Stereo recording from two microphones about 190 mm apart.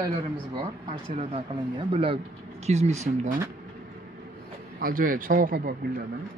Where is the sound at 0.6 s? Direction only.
35° right (ahead or behind).